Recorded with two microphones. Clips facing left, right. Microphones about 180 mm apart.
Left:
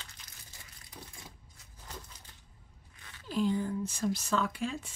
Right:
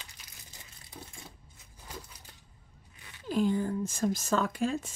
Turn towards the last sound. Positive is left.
turn(degrees=-45)  # may be behind; listen again after turning